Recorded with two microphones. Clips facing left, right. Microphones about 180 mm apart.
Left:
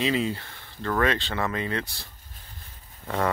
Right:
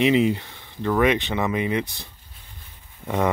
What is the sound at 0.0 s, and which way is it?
Speech, 20° right (ahead or behind).